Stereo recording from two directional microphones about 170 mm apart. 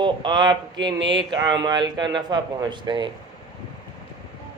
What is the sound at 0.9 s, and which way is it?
Speech, 90° right.